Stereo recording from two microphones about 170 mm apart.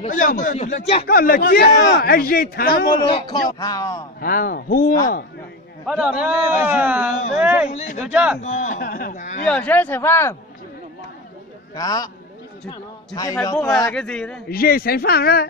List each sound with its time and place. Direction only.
0.0 s speech: 50° left (ahead or behind)
1.0 s a man's voice: 60° left (ahead or behind)
2.9 s a man's voice: 25° left (ahead or behind)
4.2 s a man's voice: 55° left (ahead or behind)
5.9 s a man's voice: 5° right (ahead or behind)
8.4 s speech: 45° left (ahead or behind)
9.5 s speech: 10° left (ahead or behind)
11.7 s a man's voice: 20° left (ahead or behind)
13.9 s a man's voice: 5° left (ahead or behind)
14.5 s a man's voice: 60° left (ahead or behind)